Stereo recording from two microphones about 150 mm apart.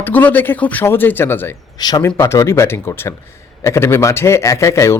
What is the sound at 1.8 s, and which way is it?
A man's voice, 25° left (ahead or behind).